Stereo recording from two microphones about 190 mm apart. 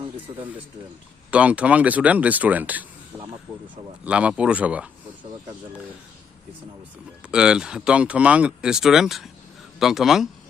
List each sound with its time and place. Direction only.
0.3 s speech: 30° right (ahead or behind)
1.3 s speech: 5° right (ahead or behind)
3.5 s speech: 20° right (ahead or behind)
4.0 s speech: 5° right (ahead or behind)
7.2 s speech: 5° right (ahead or behind)